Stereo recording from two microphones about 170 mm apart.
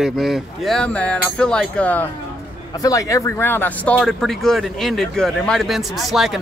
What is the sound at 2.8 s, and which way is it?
Speech, 20° left (ahead or behind).